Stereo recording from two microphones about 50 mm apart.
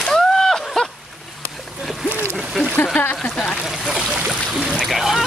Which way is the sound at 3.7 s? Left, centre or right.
Centre.